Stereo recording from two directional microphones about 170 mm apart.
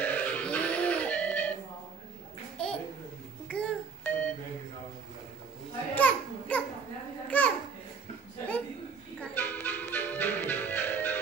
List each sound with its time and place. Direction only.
0.0 s music: 10° left (ahead or behind)
2.5 s a sound: 5° left (ahead or behind)
3.4 s doorbell: 5° left (ahead or behind)
5.9 s a sound: 10° left (ahead or behind)
7.2 s babbling: 10° left (ahead or behind)
9.2 s music: 10° left (ahead or behind)